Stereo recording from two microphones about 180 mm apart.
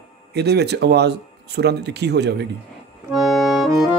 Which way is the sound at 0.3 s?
65° right (ahead or behind).